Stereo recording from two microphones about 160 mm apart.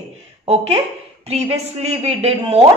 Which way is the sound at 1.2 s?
40° right (ahead or behind).